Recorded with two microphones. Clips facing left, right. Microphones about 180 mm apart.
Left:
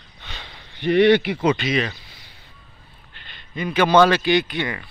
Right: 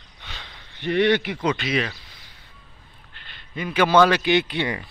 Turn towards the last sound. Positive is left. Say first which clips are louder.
# left 1 dB
turn(degrees=-30)  # may be behind; listen again after turning